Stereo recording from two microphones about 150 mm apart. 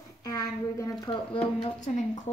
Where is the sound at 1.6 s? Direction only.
50° left (ahead or behind).